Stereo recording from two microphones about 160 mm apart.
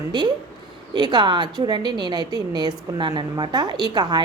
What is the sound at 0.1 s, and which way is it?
A woman's voice, 25° right (ahead or behind).